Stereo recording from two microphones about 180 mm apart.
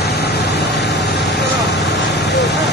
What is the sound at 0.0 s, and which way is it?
Vehicle, 65° left (ahead or behind).